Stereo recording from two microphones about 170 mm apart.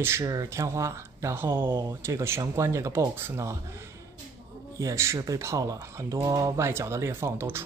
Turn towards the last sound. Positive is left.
turn(degrees=-15)  # may be behind; listen again after turning